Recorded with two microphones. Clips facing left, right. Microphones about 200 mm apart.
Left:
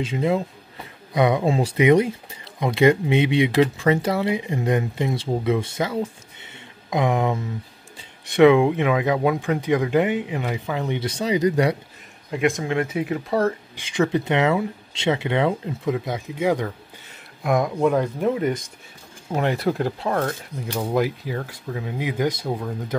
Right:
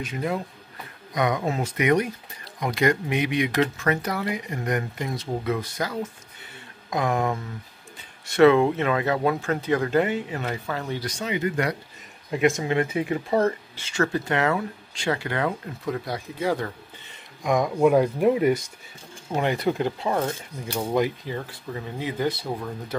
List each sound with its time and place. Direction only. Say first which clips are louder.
0.0 s speech: left 6 dB; 25° left (ahead or behind)
6.4 s a sound: even; 20° left (ahead or behind)
8.3 s speech: left 2 dB; 15° left (ahead or behind); by 11.7 s 35° left (ahead or behind)
12.3 s speech: even; centre (ahead or behind)
13.7 s speech: left 4 dB; 15° left (ahead or behind)
17.4 s speech: left 1 dB; 5° left (ahead or behind)
17.7 s speech: right 2 dB; 10° right (ahead or behind)
19.3 s speech: left 1 dB; centre (ahead or behind)
20.7 s speech: left 1 dB; 5° left (ahead or behind)